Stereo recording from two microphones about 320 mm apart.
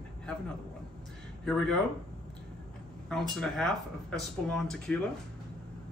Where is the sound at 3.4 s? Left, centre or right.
Centre.